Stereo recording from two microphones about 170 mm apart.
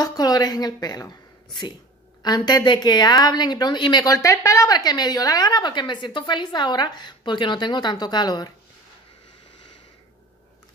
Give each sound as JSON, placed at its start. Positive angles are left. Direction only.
{"t": 0.0, "sound": "a woman's voice", "side_deg": 20}